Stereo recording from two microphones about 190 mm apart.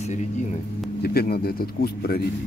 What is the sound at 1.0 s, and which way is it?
A man's voice, 55° left (ahead or behind).